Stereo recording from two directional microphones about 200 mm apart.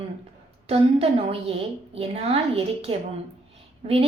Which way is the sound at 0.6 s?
30° right (ahead or behind).